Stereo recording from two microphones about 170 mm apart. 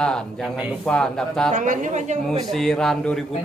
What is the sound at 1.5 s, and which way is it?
Speech, 50° right (ahead or behind).